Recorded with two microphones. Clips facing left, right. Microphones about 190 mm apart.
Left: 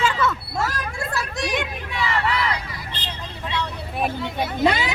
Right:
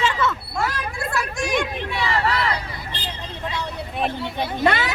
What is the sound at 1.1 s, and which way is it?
Speech, 35° left (ahead or behind).